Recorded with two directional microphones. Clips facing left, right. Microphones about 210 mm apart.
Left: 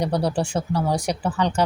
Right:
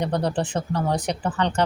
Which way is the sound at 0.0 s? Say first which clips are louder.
Left 1 dB; 10° left (ahead or behind).